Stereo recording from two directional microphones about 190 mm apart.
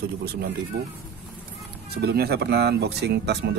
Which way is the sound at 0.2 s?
55° right (ahead or behind).